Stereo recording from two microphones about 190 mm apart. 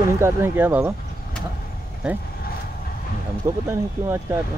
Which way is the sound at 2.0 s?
5° right (ahead or behind).